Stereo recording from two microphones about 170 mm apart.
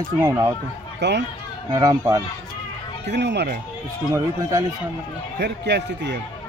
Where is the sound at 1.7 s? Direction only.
20° right (ahead or behind).